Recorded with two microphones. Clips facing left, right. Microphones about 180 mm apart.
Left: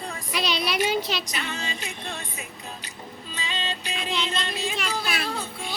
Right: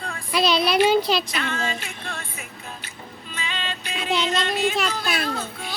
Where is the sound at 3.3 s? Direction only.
35° left (ahead or behind).